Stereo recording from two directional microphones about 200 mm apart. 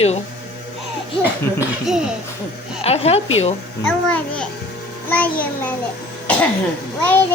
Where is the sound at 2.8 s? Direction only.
30° left (ahead or behind).